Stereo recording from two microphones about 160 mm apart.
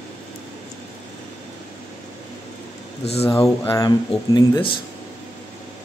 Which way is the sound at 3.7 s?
25° left (ahead or behind).